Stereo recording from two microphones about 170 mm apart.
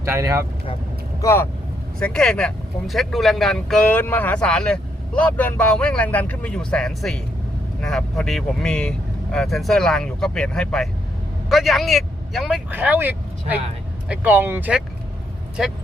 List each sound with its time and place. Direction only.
0.0 s speech: 15° right (ahead or behind)
1.2 s speech: 15° left (ahead or behind)
2.0 s speech: 5° left (ahead or behind); by 14.8 s 10° right (ahead or behind)